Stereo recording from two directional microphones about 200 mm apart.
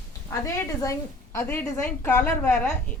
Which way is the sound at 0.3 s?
15° left (ahead or behind).